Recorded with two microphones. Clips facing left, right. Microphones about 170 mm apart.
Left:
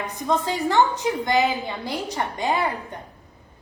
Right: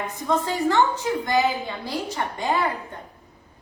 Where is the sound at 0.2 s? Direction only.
20° left (ahead or behind).